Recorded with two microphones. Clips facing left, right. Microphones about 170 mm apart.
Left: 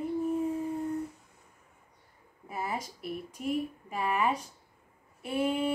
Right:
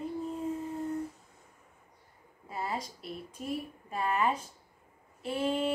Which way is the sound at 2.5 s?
20° left (ahead or behind).